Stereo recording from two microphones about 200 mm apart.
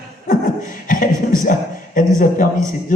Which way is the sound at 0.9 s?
40° left (ahead or behind).